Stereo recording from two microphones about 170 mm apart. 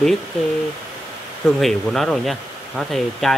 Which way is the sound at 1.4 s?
Centre (ahead or behind).